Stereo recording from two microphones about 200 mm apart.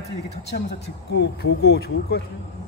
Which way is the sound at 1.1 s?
55° left (ahead or behind).